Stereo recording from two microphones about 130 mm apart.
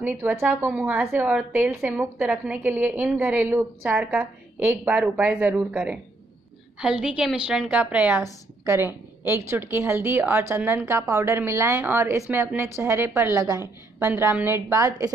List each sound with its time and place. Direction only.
0.0 s a woman's voice: 15° right (ahead or behind)